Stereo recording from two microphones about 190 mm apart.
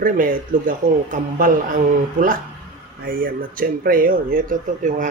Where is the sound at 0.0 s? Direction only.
45° right (ahead or behind).